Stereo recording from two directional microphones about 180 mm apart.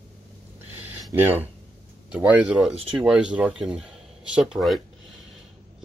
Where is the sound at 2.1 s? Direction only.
5° right (ahead or behind).